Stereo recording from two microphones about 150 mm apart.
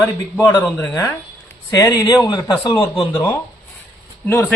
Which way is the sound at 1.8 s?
25° left (ahead or behind).